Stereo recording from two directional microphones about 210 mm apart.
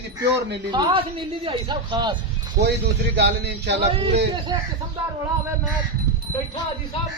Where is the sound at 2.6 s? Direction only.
50° right (ahead or behind).